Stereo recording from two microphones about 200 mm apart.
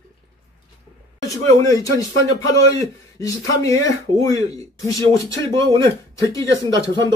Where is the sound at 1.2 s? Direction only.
15° left (ahead or behind).